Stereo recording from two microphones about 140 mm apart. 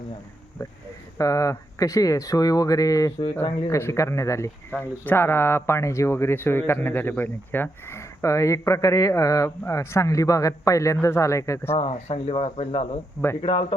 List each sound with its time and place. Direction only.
1.2 s speech: 25° left (ahead or behind)
11.8 s speech: 50° left (ahead or behind)